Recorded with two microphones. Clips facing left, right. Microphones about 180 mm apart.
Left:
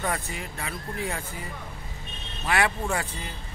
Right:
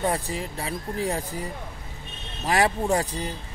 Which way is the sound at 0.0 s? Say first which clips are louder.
Right 4 dB; 35° right (ahead or behind).